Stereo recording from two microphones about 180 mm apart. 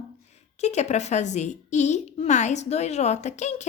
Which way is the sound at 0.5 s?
40° left (ahead or behind).